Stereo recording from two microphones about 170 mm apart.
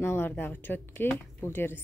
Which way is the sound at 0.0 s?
15° left (ahead or behind).